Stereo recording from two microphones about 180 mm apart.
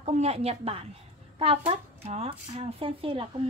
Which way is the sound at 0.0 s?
35° right (ahead or behind).